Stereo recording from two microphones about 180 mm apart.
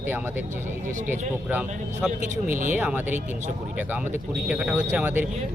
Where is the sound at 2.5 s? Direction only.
45° right (ahead or behind).